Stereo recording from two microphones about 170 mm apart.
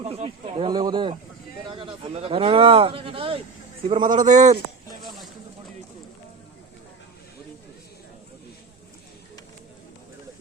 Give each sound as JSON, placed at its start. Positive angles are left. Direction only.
{"t": 0.0, "sound": "speech", "side_deg": -40}
{"t": 4.0, "sound": "a man's voice", "side_deg": -50}
{"t": 5.0, "sound": "a sound", "side_deg": 0}